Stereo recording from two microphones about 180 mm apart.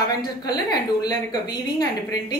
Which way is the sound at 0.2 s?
20° left (ahead or behind).